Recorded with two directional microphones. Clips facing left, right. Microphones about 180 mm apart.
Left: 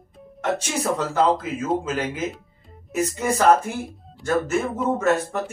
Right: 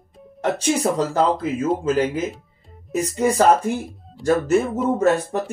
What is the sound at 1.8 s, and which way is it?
Speech, 35° right (ahead or behind).